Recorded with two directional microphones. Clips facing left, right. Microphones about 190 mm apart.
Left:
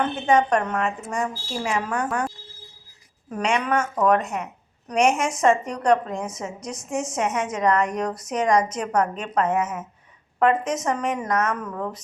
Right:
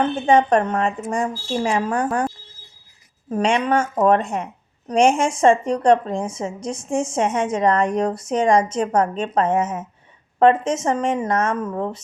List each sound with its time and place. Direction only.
0.3 s a woman's voice: 30° right (ahead or behind)